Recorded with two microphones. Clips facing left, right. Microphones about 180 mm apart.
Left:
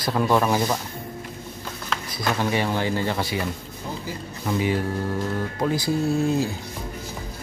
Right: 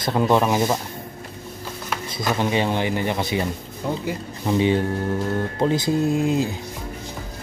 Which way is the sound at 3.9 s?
65° right (ahead or behind).